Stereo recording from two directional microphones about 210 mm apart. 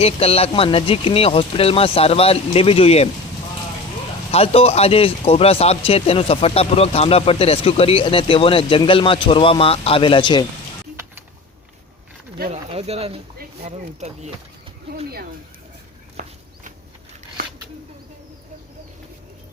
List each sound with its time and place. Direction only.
0.0 s speech: 30° left (ahead or behind)
4.3 s speech: 30° left (ahead or behind)
12.5 s speech: 30° right (ahead or behind)
16.2 s a sound: 35° right (ahead or behind)